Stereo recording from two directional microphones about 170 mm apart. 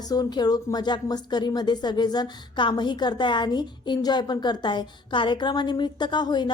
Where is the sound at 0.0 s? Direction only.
25° left (ahead or behind).